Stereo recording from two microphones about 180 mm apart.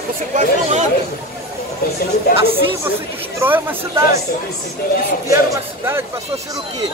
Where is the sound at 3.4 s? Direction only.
15° right (ahead or behind).